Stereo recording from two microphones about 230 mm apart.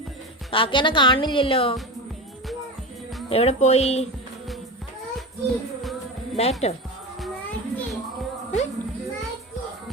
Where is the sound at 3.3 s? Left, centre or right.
Left.